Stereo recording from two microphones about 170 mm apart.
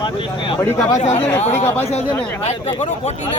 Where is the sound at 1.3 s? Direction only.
15° left (ahead or behind).